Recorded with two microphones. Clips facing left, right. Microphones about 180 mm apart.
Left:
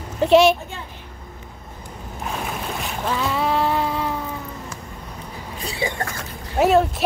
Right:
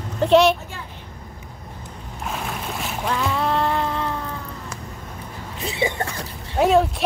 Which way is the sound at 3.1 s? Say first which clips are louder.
Left 1 dB; centre (ahead or behind).